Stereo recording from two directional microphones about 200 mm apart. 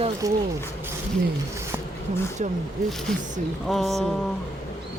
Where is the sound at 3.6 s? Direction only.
Centre (ahead or behind).